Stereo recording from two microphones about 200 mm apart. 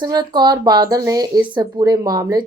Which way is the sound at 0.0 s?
20° right (ahead or behind).